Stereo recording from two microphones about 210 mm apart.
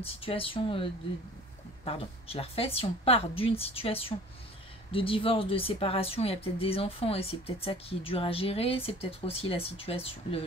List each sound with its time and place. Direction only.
0.0 s speech: 25° left (ahead or behind)
1.9 s speech: 25° left (ahead or behind)